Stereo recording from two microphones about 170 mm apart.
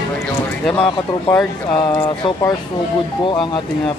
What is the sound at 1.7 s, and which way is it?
Speech, 25° left (ahead or behind).